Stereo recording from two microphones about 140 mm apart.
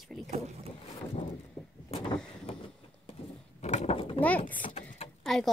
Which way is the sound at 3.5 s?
55° left (ahead or behind).